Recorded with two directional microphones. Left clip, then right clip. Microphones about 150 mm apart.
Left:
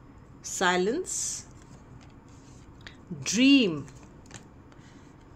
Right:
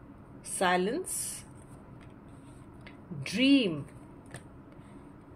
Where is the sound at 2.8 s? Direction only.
45° left (ahead or behind).